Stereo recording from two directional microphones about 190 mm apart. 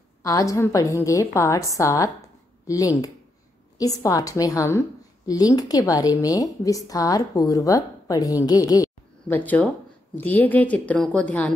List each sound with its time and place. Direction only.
0.2 s a woman's voice: 20° left (ahead or behind)